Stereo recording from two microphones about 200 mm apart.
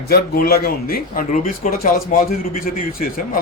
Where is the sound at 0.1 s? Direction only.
50° left (ahead or behind).